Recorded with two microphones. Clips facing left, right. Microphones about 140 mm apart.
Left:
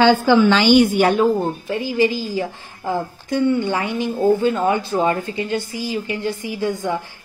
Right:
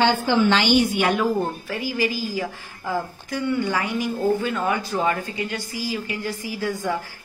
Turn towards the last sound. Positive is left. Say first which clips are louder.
# left 3 dB
turn(degrees=25)  # may be behind; listen again after turning